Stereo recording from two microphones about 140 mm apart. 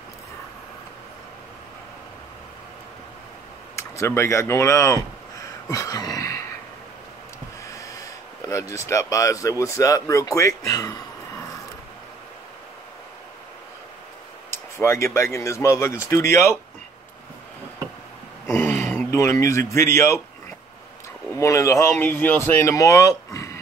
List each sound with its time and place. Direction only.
3.7 s speech: 20° left (ahead or behind)
7.6 s speech: 25° left (ahead or behind)
14.5 s speech: 20° left (ahead or behind)
18.5 s a sound: 15° left (ahead or behind)
18.9 s speech: 15° left (ahead or behind)
21.4 s speech: 20° left (ahead or behind)